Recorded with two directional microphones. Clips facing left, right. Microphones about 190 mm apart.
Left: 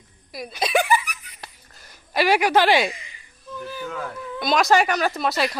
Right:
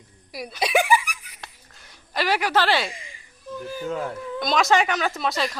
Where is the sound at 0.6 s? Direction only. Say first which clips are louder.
Even; 10° right (ahead or behind).